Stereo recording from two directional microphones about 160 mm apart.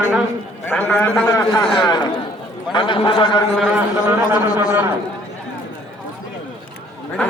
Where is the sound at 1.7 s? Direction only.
30° left (ahead or behind).